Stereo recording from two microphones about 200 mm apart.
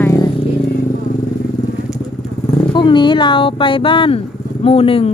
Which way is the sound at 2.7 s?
25° left (ahead or behind).